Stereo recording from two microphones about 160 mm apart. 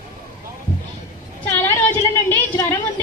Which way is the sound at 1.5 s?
15° left (ahead or behind).